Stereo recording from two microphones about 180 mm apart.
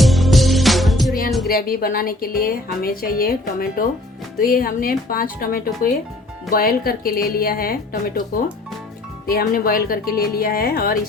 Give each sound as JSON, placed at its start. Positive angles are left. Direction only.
{"t": 0.0, "sound": "music", "side_deg": 0}
{"t": 1.5, "sound": "a woman's voice", "side_deg": 55}
{"t": 9.2, "sound": "a woman's voice", "side_deg": 55}